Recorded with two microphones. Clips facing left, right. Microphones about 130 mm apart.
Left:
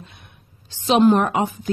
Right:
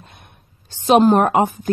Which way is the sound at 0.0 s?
50° right (ahead or behind).